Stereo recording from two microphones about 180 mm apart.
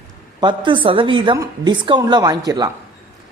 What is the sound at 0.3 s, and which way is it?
A woman's voice, 25° right (ahead or behind).